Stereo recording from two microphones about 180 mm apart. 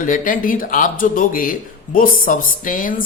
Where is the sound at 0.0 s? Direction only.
50° left (ahead or behind).